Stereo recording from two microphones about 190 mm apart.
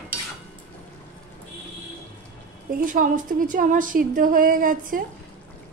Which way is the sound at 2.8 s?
45° right (ahead or behind).